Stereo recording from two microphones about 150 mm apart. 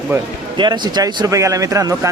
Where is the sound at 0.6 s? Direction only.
30° right (ahead or behind).